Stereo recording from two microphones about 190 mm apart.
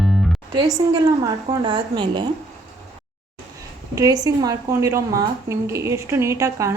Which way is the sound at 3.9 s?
20° right (ahead or behind).